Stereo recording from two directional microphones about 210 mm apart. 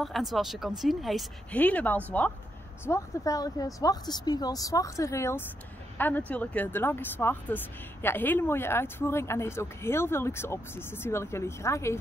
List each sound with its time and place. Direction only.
0.0 s speech: centre (ahead or behind)